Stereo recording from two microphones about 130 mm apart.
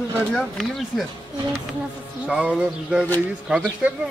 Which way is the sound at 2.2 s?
10° right (ahead or behind).